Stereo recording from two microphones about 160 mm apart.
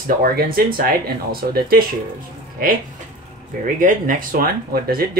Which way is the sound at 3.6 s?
55° right (ahead or behind).